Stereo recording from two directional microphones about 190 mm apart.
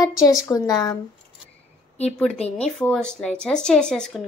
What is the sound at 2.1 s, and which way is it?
Speech, 5° left (ahead or behind).